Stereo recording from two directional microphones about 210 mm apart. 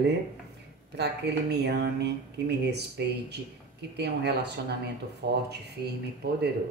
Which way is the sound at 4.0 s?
55° right (ahead or behind).